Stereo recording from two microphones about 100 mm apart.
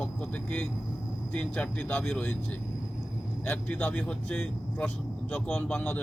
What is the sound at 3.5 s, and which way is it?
Speech, 15° left (ahead or behind).